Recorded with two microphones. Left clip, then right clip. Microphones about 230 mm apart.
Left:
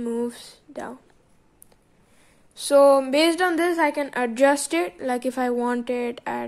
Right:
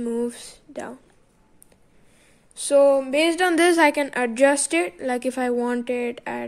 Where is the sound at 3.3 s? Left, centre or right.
Centre.